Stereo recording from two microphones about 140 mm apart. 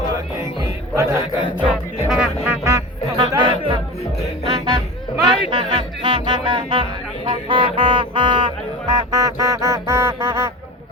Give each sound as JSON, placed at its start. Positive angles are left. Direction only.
{"t": 0.6, "sound": "speech", "side_deg": -25}
{"t": 1.6, "sound": "music", "side_deg": -5}
{"t": 3.2, "sound": "chatter", "side_deg": -35}
{"t": 4.4, "sound": "music", "side_deg": -35}